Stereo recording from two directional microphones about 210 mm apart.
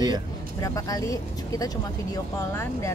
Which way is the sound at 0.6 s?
15° left (ahead or behind).